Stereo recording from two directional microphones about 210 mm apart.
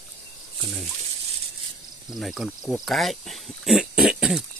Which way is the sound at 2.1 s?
Centre (ahead or behind).